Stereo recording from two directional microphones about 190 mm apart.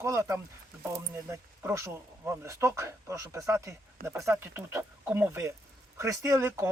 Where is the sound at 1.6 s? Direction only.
15° right (ahead or behind).